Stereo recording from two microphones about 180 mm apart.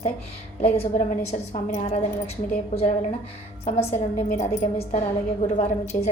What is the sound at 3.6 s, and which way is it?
A woman's voice, 40° left (ahead or behind).